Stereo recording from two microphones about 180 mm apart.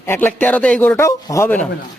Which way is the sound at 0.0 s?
10° left (ahead or behind).